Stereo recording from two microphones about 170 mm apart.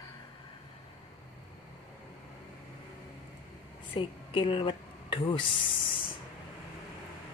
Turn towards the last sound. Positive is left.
turn(degrees=30)  # may be behind; listen again after turning